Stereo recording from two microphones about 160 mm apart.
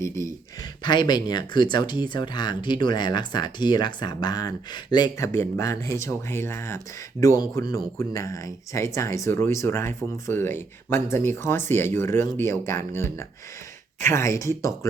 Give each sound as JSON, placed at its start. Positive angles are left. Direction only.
{"t": 0.8, "sound": "speech", "side_deg": 30}